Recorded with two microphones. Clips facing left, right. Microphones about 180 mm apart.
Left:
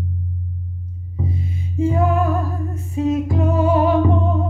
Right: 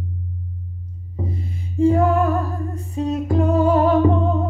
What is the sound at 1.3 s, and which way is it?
Music, 15° left (ahead or behind).